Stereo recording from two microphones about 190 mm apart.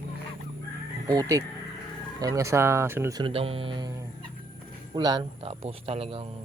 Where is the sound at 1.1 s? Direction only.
20° right (ahead or behind).